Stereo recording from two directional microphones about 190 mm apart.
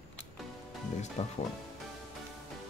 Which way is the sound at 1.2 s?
35° left (ahead or behind).